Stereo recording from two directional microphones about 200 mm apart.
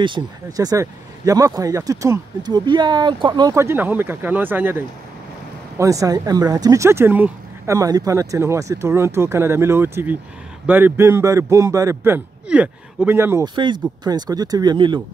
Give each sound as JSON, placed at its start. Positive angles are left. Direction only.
{"t": 0.0, "sound": "speech", "side_deg": -20}